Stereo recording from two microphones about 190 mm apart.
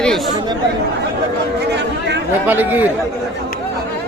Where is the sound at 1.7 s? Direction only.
65° right (ahead or behind).